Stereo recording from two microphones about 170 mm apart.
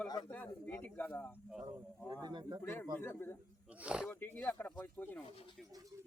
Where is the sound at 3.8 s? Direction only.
5° right (ahead or behind).